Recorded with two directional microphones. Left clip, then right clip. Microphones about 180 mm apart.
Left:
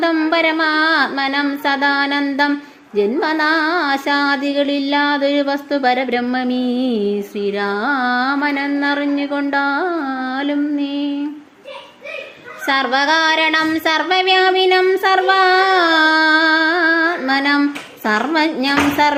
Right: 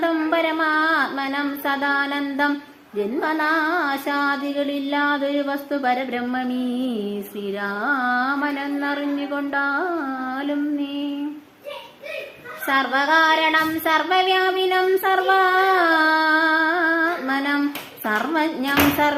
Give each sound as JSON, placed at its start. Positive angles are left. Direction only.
{"t": 0.0, "sound": "music", "side_deg": 35}
{"t": 12.6, "sound": "child singing", "side_deg": 35}
{"t": 18.0, "sound": "music", "side_deg": 35}